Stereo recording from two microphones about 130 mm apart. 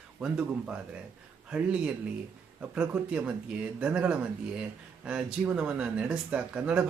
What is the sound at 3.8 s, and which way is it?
Speech, 10° right (ahead or behind).